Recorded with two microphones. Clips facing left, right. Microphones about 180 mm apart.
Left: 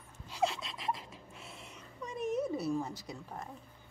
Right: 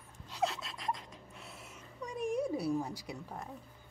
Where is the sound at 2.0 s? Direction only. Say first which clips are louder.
Even; 10° right (ahead or behind).